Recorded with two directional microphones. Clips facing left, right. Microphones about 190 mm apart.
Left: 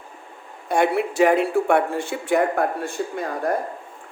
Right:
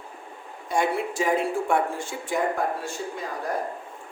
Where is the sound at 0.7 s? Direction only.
60° left (ahead or behind).